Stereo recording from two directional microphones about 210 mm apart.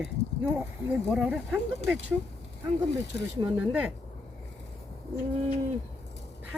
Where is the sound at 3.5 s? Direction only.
5° right (ahead or behind).